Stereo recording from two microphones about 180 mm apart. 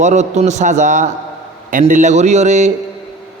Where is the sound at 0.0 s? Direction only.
40° right (ahead or behind).